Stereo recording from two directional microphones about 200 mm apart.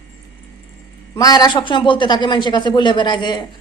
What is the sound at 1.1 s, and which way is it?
A woman's voice, 20° left (ahead or behind).